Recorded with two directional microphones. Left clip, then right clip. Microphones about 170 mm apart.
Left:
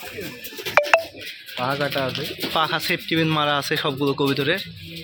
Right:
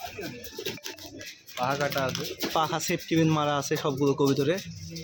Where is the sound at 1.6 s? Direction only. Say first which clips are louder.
Left 4 dB; 45° left (ahead or behind).